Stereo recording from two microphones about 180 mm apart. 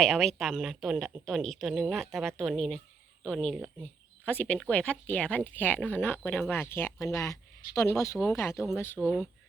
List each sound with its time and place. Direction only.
0.0 s speech: centre (ahead or behind)
3.8 s speech: 10° left (ahead or behind)